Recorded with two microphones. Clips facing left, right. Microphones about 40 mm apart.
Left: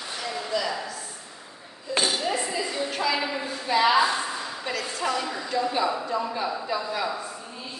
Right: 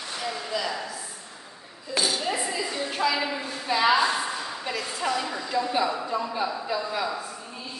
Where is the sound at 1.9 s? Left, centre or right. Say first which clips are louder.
Left 1 dB; left.